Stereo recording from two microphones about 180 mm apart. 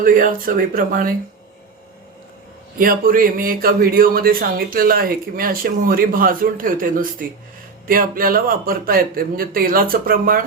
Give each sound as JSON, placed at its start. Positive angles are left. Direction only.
{"t": 0.0, "sound": "speech", "side_deg": -50}
{"t": 2.7, "sound": "speech", "side_deg": -50}